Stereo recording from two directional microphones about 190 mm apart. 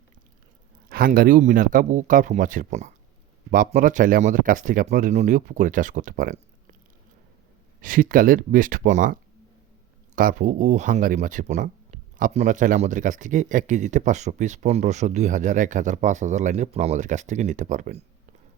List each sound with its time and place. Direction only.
0.9 s speech: 50° right (ahead or behind)
7.8 s speech: 45° right (ahead or behind)
10.2 s speech: 45° right (ahead or behind)